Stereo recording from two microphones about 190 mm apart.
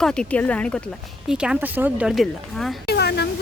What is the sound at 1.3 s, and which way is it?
Speech, 5° right (ahead or behind).